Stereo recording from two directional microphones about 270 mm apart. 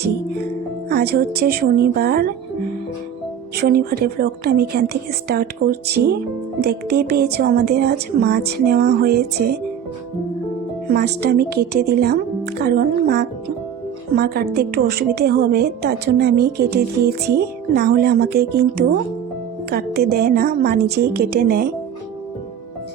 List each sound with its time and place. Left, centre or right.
0.9 s a woman's voice: right
3.5 s a woman's voice: right
10.8 s a woman's voice: right